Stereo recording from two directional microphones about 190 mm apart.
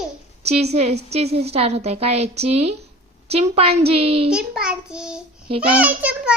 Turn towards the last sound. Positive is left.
turn(degrees=-5)  # may be behind; listen again after turning